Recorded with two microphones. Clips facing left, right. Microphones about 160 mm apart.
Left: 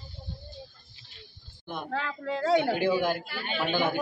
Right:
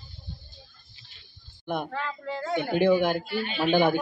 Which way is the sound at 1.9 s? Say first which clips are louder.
Left 1 dB; 90° left.